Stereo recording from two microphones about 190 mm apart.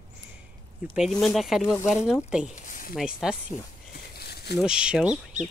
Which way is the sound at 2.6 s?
45° left (ahead or behind).